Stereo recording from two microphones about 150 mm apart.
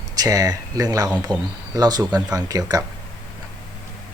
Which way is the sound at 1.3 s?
10° left (ahead or behind).